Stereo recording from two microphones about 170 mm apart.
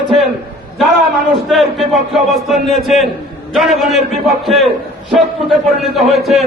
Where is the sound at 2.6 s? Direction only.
Centre (ahead or behind).